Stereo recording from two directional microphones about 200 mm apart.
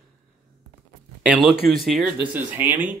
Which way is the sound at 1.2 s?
5° right (ahead or behind).